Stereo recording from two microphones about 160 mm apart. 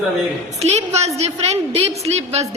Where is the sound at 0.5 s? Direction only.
45° right (ahead or behind).